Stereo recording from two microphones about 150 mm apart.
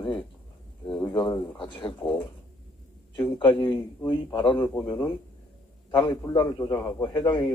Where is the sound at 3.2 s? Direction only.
30° left (ahead or behind).